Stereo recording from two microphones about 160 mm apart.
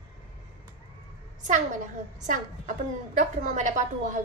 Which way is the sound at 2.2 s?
55° right (ahead or behind).